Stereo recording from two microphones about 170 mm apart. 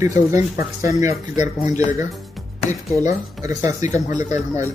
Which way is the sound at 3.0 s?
20° right (ahead or behind).